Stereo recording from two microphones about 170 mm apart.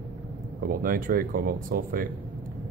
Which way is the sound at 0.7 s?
55° right (ahead or behind).